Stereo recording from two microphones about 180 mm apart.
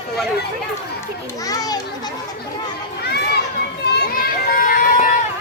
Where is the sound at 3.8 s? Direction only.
65° left (ahead or behind).